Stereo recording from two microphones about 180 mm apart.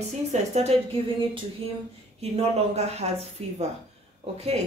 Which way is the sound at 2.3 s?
35° right (ahead or behind).